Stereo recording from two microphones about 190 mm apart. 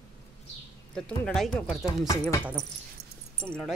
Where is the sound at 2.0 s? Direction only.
15° left (ahead or behind).